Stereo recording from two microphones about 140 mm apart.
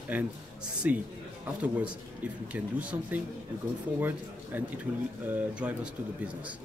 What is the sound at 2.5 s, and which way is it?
Speech, 10° right (ahead or behind).